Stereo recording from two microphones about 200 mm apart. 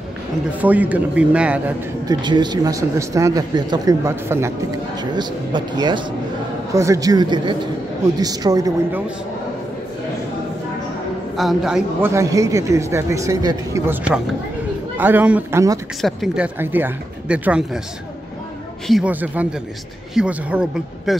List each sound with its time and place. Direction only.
0.6 s speech: 10° right (ahead or behind)
2.0 s speech: 20° right (ahead or behind)
11.3 s speech: centre (ahead or behind)
12.1 s speech: 15° right (ahead or behind)
16.0 s speech: centre (ahead or behind)
16.5 s speech: 10° right (ahead or behind)
18.9 s speech: 5° right (ahead or behind)